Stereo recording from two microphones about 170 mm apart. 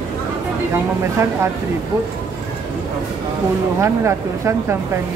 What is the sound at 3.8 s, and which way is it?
Speech, 15° right (ahead or behind).